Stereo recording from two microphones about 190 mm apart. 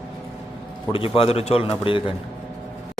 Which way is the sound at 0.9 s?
30° left (ahead or behind).